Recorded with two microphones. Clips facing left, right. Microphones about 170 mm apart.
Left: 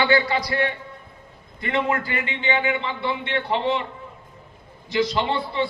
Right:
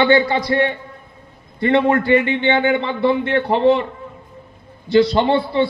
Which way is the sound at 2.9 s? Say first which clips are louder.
Right 9 dB; 40° right (ahead or behind).